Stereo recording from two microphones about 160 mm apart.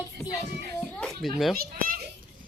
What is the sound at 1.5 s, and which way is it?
Speech, 70° right (ahead or behind).